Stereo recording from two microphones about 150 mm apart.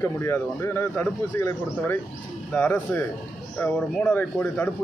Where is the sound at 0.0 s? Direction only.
20° left (ahead or behind).